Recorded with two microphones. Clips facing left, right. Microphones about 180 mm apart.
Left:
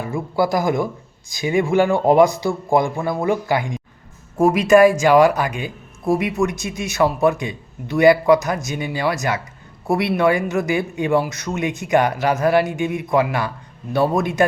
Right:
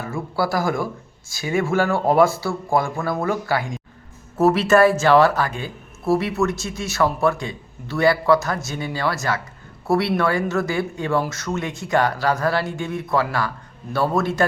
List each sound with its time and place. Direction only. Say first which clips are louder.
0.0 s speech: left 4 dB; 15° left (ahead or behind)